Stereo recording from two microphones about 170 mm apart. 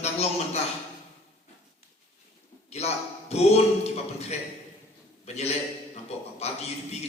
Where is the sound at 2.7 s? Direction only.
40° left (ahead or behind).